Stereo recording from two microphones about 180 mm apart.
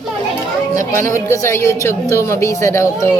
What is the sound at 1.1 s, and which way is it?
A woman's voice, 15° left (ahead or behind).